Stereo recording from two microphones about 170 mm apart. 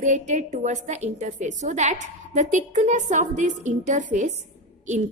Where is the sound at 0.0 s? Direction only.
45° right (ahead or behind).